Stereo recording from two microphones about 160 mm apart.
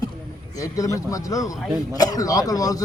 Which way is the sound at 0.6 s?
20° left (ahead or behind).